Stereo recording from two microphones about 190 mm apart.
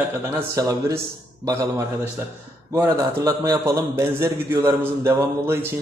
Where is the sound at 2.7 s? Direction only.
15° right (ahead or behind).